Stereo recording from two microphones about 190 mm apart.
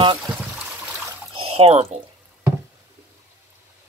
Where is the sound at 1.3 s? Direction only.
30° right (ahead or behind).